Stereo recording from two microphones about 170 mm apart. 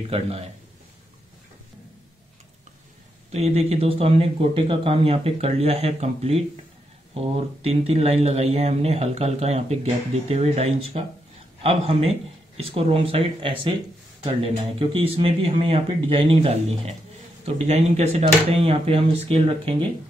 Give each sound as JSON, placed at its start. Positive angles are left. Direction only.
{"t": 3.3, "sound": "speech", "side_deg": -40}